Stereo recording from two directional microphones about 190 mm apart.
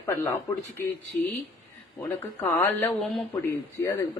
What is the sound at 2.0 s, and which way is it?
Speech, 10° left (ahead or behind).